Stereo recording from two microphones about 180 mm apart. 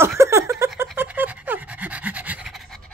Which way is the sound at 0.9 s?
10° right (ahead or behind).